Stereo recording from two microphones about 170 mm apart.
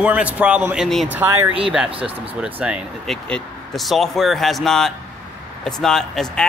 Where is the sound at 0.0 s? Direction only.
10° right (ahead or behind).